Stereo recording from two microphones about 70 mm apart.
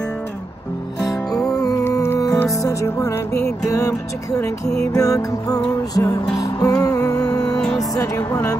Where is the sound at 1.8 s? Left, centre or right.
Left.